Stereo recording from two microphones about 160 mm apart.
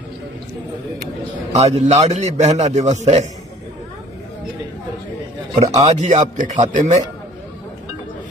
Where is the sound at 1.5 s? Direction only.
45° right (ahead or behind).